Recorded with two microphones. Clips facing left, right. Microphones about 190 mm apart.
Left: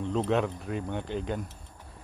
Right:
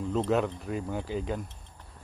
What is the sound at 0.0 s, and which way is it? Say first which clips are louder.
Speech: even; centre (ahead or behind).